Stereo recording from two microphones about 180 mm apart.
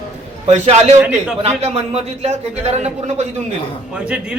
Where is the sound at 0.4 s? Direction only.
35° right (ahead or behind).